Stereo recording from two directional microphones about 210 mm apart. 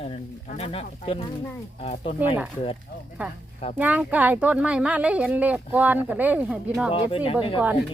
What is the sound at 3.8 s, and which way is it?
Speech, 5° right (ahead or behind).